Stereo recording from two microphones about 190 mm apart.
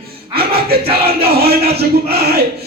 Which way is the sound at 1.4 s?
55° right (ahead or behind).